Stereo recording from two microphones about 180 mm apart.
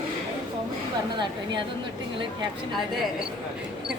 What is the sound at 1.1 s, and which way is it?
Speech, 25° right (ahead or behind).